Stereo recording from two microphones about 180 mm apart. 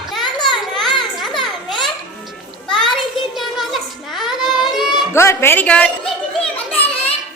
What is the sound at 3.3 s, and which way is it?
Child singing, centre (ahead or behind).